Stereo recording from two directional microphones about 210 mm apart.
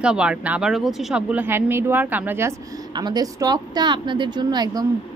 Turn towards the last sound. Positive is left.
turn(degrees=-20)  # may be behind; listen again after turning